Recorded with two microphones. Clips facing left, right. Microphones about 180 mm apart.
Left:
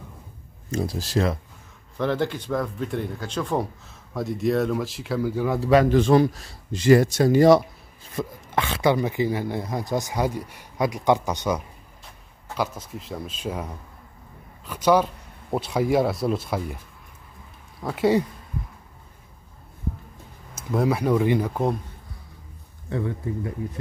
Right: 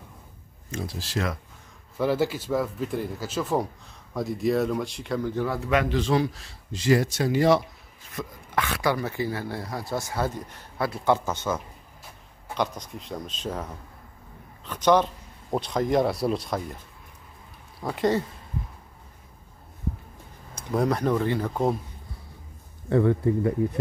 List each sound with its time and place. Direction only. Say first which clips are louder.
0.7 s speech: left 6 dB; 40° left (ahead or behind)
2.0 s speech: even; 5° right (ahead or behind); by 5.6 s 10° left (ahead or behind)
5.6 s speech: left 8 dB; 35° left (ahead or behind)
5.9 s speech: left 6 dB; 50° left (ahead or behind)
8.1 s speech: left 5 dB; 25° left (ahead or behind); by 16.7 s 5° left (ahead or behind)
17.7 s speech: left 3 dB; centre (ahead or behind)
20.5 s speech: left 2 dB; 5° left (ahead or behind)
22.8 s speech: right 7 dB; 60° right (ahead or behind)